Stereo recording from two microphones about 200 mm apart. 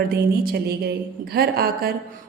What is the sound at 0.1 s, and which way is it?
A woman's voice, 50° right (ahead or behind).